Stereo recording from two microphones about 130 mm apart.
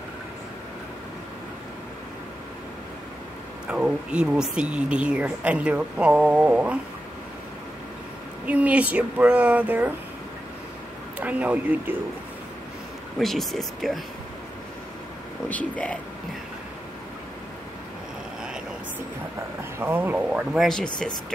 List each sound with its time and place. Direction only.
3.6 s speech: 10° right (ahead or behind)
8.5 s speech: 10° right (ahead or behind)
11.1 s speech: 10° right (ahead or behind)
13.2 s speech: centre (ahead or behind)
15.4 s speech: 10° left (ahead or behind)
19.8 s speech: 15° right (ahead or behind)
20.6 s speech: 5° left (ahead or behind)